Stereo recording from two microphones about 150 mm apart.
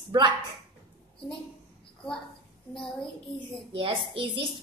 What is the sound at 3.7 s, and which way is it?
Speech, 35° right (ahead or behind).